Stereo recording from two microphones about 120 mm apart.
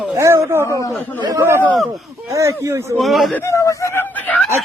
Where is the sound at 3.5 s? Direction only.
25° left (ahead or behind).